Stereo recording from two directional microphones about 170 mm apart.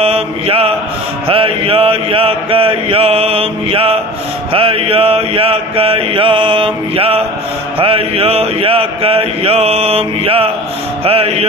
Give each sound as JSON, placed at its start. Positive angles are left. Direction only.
{"t": 0.0, "sound": "mantra", "side_deg": -35}